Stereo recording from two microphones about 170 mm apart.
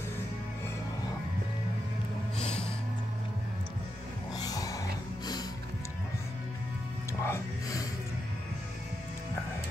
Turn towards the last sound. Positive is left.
turn(degrees=20)  # may be behind; listen again after turning